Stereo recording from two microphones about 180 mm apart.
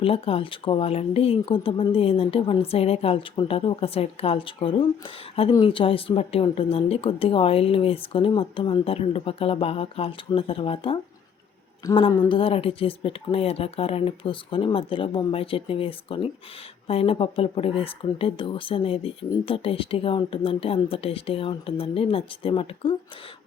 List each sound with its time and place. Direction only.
0.0 s a woman's voice: 30° left (ahead or behind)